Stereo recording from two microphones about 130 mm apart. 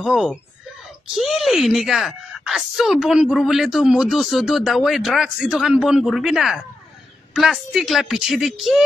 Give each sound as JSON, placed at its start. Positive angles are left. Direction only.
{"t": 0.0, "sound": "speech", "side_deg": -5}